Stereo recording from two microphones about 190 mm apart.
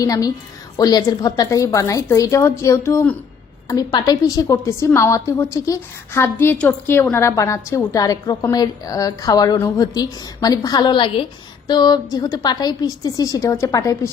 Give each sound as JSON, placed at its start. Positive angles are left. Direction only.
{"t": 0.0, "sound": "a woman's voice", "side_deg": 20}